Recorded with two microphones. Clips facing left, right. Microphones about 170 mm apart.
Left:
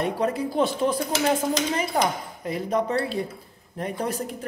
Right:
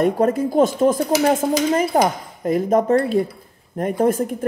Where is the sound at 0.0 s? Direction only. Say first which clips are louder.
Right 7 dB; 45° right (ahead or behind).